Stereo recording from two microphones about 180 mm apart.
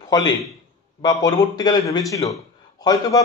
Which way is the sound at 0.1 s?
20° left (ahead or behind).